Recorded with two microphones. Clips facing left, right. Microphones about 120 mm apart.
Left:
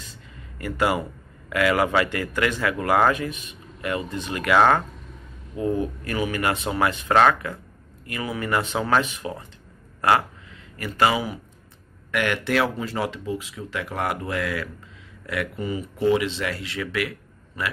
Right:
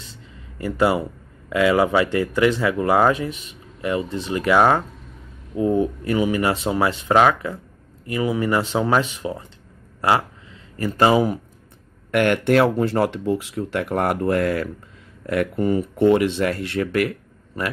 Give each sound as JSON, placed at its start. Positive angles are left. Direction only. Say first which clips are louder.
{"t": 0.0, "sound": "a sound", "louder": "right 1 dB", "side_deg": -30}
{"t": 1.5, "sound": "speech", "louder": "right 4 dB", "side_deg": -25}
{"t": 4.6, "sound": "speech", "louder": "right 1 dB", "side_deg": -10}
{"t": 5.6, "sound": "speech", "louder": "right 5 dB", "side_deg": -25}
{"t": 10.8, "sound": "speech", "louder": "right 5 dB", "side_deg": -40}